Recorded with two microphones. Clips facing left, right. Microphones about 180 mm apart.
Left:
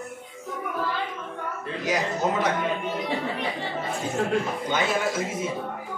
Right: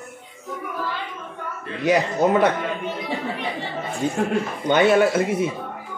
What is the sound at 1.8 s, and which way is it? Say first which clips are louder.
Speech: right 7 dB; 60° right (ahead or behind).